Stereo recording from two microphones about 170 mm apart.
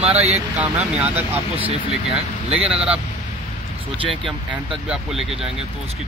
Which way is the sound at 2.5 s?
35° right (ahead or behind).